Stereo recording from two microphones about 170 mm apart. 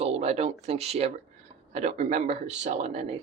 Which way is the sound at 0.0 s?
40° right (ahead or behind).